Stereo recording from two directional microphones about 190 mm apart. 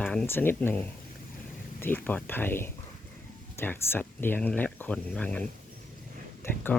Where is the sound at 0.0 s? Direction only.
5° left (ahead or behind).